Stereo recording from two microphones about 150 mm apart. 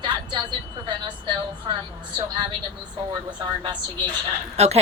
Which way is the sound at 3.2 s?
30° right (ahead or behind).